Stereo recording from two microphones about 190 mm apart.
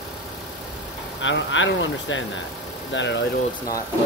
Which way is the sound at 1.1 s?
75° left (ahead or behind).